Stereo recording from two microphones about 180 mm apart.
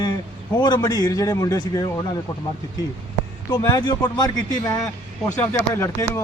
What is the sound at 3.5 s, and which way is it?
A man's voice, 20° left (ahead or behind).